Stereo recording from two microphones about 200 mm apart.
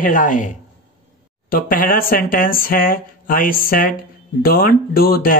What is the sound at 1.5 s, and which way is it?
Speech, 45° left (ahead or behind).